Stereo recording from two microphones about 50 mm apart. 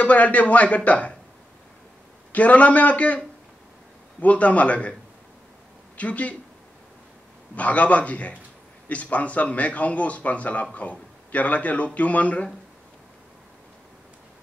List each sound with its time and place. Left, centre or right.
0.0 s speech: left
2.3 s speech: left
4.2 s speech: left
5.9 s a man's voice: left
7.5 s speech: left